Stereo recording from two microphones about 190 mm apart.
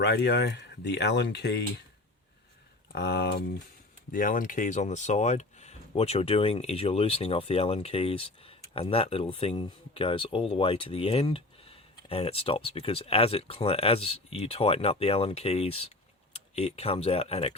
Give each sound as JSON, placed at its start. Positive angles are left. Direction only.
{"t": 0.0, "sound": "speech", "side_deg": 60}
{"t": 2.9, "sound": "speech", "side_deg": 60}
{"t": 4.1, "sound": "speech", "side_deg": 45}